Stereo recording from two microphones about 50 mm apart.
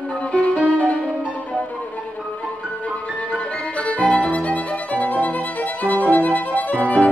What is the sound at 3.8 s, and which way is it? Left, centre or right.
Violin, left.